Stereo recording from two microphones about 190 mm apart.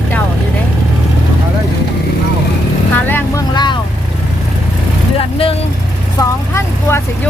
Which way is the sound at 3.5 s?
25° left (ahead or behind).